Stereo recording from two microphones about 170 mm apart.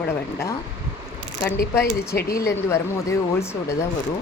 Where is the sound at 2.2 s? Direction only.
65° left (ahead or behind).